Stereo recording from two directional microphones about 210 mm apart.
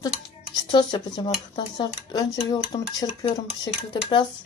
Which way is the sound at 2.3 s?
25° left (ahead or behind).